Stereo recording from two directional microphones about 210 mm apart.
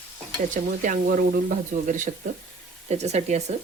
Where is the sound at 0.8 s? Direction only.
40° right (ahead or behind).